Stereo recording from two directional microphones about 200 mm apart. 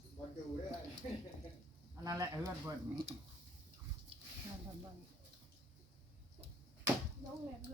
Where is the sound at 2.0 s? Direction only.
15° right (ahead or behind).